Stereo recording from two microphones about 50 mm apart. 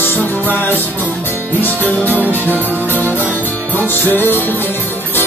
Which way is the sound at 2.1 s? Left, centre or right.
Right.